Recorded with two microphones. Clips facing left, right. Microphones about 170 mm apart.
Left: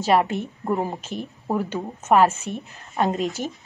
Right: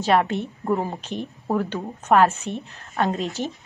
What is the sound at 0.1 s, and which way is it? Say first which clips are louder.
Speech: even; 10° left (ahead or behind).